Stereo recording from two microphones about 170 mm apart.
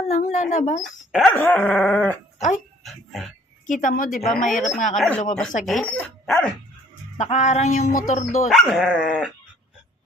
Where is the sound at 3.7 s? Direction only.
50° left (ahead or behind).